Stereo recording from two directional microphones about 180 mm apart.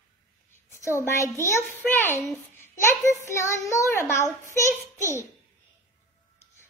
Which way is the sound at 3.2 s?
15° left (ahead or behind).